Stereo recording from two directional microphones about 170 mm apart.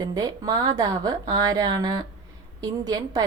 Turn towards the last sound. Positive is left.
turn(degrees=-20)  # may be behind; listen again after turning